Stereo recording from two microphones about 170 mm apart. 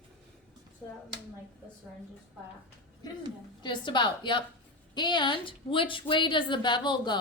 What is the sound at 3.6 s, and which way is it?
A woman's voice, 25° left (ahead or behind).